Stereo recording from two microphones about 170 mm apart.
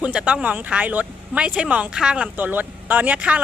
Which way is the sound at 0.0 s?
5° right (ahead or behind).